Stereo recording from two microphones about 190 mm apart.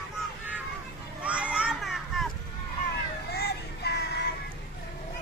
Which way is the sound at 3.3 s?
55° left (ahead or behind).